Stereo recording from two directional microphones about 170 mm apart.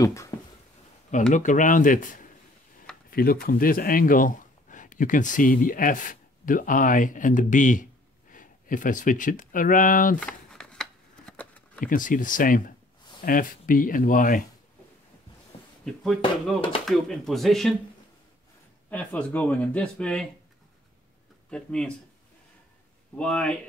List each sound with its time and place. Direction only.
0.0 s speech: 15° left (ahead or behind)
1.3 s speech: 50° left (ahead or behind)
3.1 s a sound: 60° left (ahead or behind)
3.4 s speech: 55° left (ahead or behind)
10.2 s shuffling cards: 5° left (ahead or behind)
11.8 s speech: 50° left (ahead or behind)
15.8 s speech: centre (ahead or behind)
18.9 s speech: 10° left (ahead or behind)
21.5 s speech: 5° left (ahead or behind)
23.1 s speech: 5° left (ahead or behind)